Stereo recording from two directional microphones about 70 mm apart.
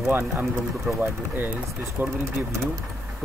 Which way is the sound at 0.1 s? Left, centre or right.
Right.